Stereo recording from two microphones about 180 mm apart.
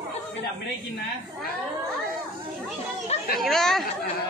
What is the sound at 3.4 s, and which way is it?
Speech, centre (ahead or behind).